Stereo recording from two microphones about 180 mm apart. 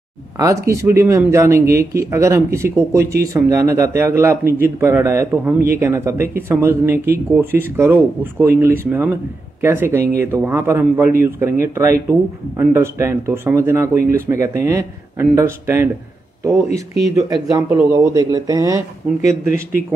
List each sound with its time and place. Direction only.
0.7 s speech: 15° right (ahead or behind)
16.6 s speech: 40° left (ahead or behind)
17.1 s speech: 20° right (ahead or behind)